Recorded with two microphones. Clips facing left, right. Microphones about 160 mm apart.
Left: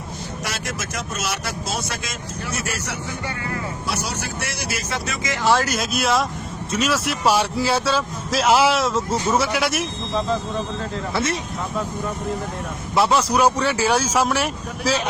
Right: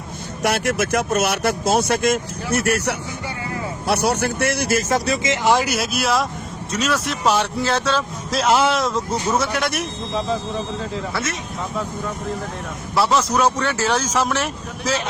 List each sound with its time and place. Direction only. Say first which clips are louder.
0.4 s speech: right 12 dB; 60° right (ahead or behind); by 10.2 s centre (ahead or behind)
11.1 s speech: left 3 dB; 30° left (ahead or behind)
13.0 s speech: even; 10° left (ahead or behind)